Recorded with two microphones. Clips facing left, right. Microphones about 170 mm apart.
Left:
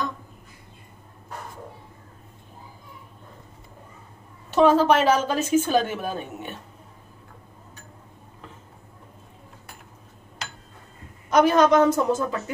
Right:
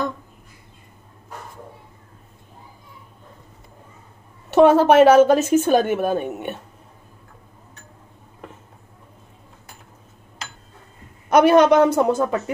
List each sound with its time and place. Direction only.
4.6 s a woman's voice: 60° right (ahead or behind)
11.2 s a woman's voice: 65° right (ahead or behind)